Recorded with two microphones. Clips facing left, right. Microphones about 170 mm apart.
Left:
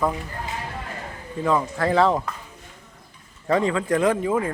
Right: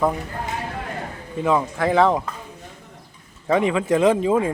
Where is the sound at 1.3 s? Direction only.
15° right (ahead or behind).